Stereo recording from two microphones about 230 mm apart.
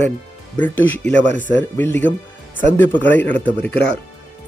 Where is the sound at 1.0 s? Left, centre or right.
Left.